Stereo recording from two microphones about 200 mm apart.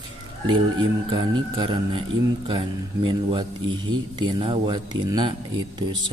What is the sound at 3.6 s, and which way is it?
Speech, 75° right (ahead or behind).